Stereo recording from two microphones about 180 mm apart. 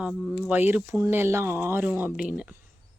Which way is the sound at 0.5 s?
10° right (ahead or behind).